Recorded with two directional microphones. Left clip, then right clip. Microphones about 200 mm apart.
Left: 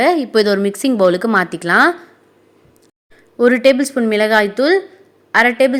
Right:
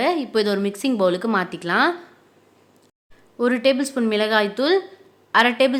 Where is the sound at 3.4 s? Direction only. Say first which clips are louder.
Left 8 dB; 20° left (ahead or behind).